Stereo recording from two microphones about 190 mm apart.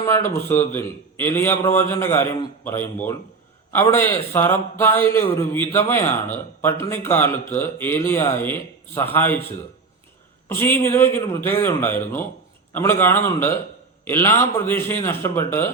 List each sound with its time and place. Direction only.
0.0 s a man's voice: 15° left (ahead or behind)
10.5 s a man's voice: 10° left (ahead or behind)